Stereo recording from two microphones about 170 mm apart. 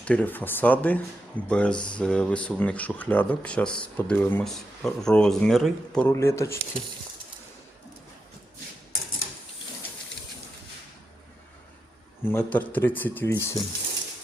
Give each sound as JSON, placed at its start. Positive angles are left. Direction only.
{"t": 0.0, "sound": "speech", "side_deg": 5}
{"t": 6.1, "sound": "speech", "side_deg": 15}
{"t": 12.2, "sound": "speech", "side_deg": 10}